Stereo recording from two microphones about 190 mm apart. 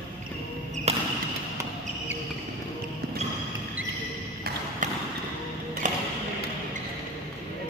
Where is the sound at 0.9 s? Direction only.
35° right (ahead or behind).